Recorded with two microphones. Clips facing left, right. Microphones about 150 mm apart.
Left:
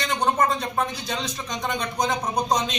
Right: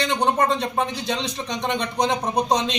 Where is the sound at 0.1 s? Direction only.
30° right (ahead or behind).